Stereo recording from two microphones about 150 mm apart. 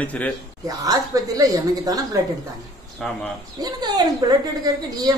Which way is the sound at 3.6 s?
25° right (ahead or behind).